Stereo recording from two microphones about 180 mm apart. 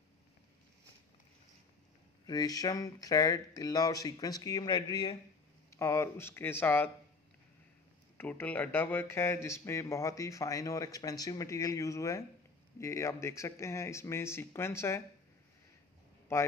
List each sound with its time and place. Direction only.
2.2 s speech: 20° left (ahead or behind)
8.2 s speech: 10° left (ahead or behind)
16.3 s speech: 15° left (ahead or behind)